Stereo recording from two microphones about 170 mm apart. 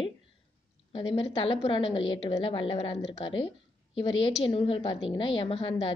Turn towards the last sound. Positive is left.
turn(degrees=30)  # may be behind; listen again after turning